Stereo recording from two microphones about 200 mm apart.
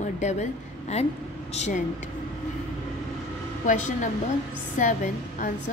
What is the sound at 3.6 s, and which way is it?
Speech, 40° left (ahead or behind).